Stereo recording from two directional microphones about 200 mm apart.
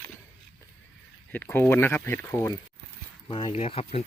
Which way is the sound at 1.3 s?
10° left (ahead or behind).